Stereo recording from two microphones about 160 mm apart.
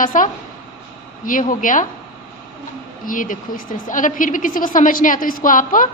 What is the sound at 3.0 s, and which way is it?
A woman's voice, 55° left (ahead or behind).